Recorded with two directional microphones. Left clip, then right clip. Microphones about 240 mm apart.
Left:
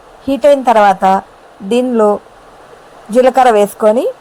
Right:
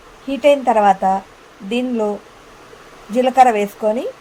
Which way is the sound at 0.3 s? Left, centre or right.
Left.